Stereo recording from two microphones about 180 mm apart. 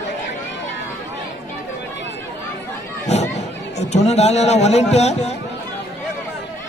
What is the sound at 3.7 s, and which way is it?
Speech, 40° left (ahead or behind).